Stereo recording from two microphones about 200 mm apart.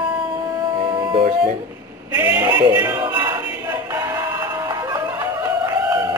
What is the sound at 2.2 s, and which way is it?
Speech, 10° right (ahead or behind).